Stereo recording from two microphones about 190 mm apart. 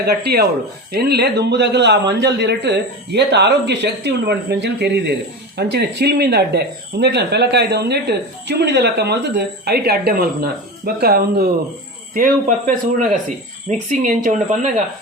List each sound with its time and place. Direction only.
0.0 s a man's voice: 55° right (ahead or behind); by 14.7 s 40° right (ahead or behind)